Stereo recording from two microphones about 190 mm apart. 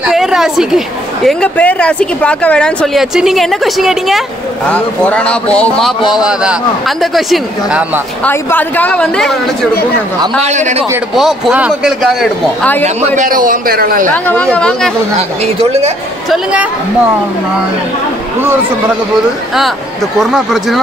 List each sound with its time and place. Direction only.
0.0 s a woman's voice: 5° right (ahead or behind)
8.2 s speech: 10° left (ahead or behind)
10.4 s a man's voice: 35° right (ahead or behind)
11.1 s a woman's voice: centre (ahead or behind)
12.8 s a man's voice: 40° right (ahead or behind)
14.1 s a woman's voice: 10° left (ahead or behind)
20.2 s a woman's voice: centre (ahead or behind)